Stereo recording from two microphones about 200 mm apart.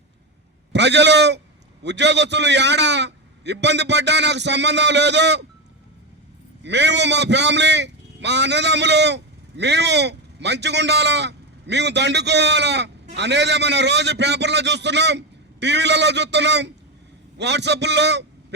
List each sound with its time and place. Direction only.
0.7 s a man's voice: 60° right (ahead or behind)
6.6 s a man's voice: 60° right (ahead or behind)